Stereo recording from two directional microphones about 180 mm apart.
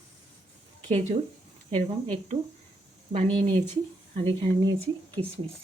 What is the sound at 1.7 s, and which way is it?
Speech, 35° right (ahead or behind).